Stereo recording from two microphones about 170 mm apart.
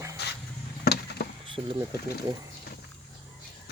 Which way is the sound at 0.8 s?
70° left (ahead or behind).